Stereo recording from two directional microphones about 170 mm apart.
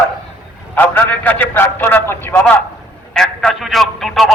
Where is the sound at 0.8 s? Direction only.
10° left (ahead or behind).